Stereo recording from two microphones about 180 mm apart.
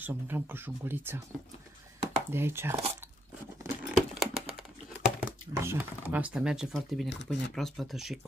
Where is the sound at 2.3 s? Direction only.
15° right (ahead or behind).